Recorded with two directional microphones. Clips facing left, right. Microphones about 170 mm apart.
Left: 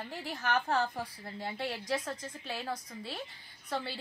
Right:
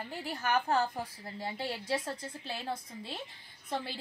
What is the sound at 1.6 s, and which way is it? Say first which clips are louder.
A woman's voice: even; 30° right (ahead or behind).